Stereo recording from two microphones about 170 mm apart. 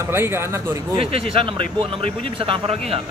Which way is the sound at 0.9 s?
35° right (ahead or behind).